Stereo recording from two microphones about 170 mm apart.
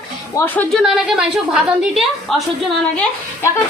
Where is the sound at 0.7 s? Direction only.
Centre (ahead or behind).